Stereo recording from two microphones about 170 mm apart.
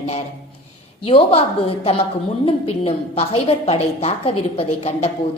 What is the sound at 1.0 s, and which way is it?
A woman's voice, 35° left (ahead or behind).